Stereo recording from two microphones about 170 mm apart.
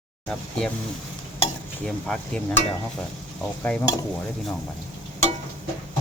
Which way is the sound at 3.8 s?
20° left (ahead or behind).